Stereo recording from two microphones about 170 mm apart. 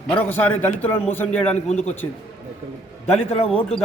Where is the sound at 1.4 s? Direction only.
40° left (ahead or behind).